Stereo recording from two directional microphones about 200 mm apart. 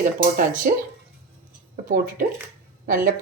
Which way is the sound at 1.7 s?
45° right (ahead or behind).